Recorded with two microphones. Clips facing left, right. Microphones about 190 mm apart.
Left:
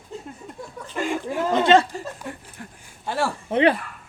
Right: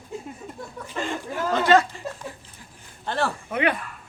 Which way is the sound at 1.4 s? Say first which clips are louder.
Left 2 dB; 25° left (ahead or behind).